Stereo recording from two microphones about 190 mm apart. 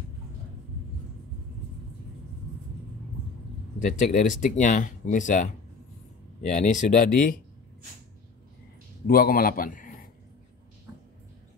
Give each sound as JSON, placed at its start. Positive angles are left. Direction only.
{"t": 3.8, "sound": "speech", "side_deg": 40}
{"t": 9.0, "sound": "a man's voice", "side_deg": 50}